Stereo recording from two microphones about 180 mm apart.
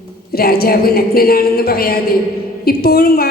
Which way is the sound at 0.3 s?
55° left (ahead or behind).